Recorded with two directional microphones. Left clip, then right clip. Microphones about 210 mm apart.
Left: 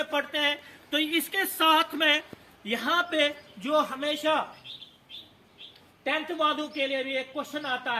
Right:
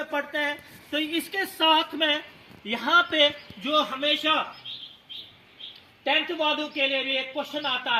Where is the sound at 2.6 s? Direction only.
Centre (ahead or behind).